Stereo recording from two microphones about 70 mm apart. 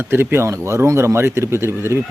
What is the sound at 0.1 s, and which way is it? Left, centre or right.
Speech, right.